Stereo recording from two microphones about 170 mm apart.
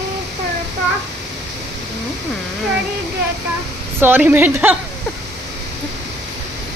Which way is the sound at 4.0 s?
10° right (ahead or behind).